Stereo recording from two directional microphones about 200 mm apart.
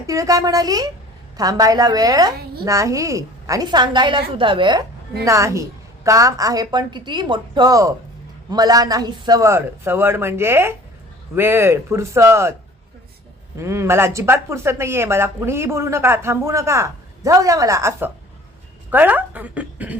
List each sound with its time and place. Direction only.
0.1 s a woman's voice: 15° right (ahead or behind)
13.6 s speech: 15° right (ahead or behind)